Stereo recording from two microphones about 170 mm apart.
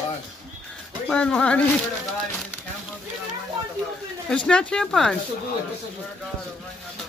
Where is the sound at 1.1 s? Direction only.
5° left (ahead or behind).